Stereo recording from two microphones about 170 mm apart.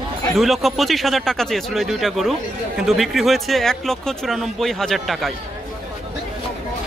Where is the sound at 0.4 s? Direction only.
Centre (ahead or behind).